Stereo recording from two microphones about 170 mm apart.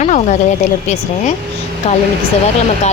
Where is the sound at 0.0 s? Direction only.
45° left (ahead or behind).